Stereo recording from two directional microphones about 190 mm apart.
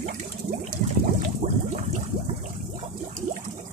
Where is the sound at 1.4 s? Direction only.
45° right (ahead or behind).